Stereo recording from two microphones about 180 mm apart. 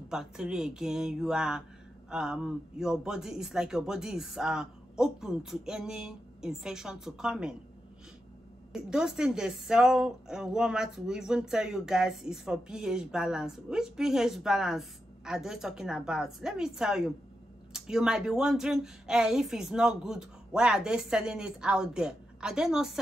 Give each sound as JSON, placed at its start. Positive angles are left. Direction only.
{"t": 0.1, "sound": "a woman's voice", "side_deg": -5}
{"t": 8.7, "sound": "a woman's voice", "side_deg": -5}